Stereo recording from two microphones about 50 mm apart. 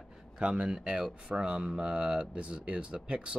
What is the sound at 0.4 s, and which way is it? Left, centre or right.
Speech, centre.